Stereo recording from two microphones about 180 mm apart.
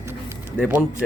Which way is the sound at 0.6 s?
10° right (ahead or behind).